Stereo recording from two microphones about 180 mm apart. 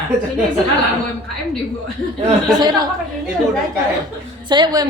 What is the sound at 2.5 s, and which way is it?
Speech, 20° right (ahead or behind).